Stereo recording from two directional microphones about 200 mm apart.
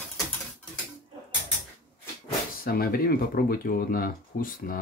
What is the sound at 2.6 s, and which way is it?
Speech, 50° left (ahead or behind).